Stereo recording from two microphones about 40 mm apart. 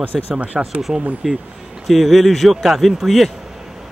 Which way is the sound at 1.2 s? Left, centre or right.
Centre.